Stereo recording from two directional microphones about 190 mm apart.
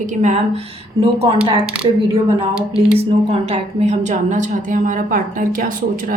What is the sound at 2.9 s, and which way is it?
A woman's voice, 30° right (ahead or behind).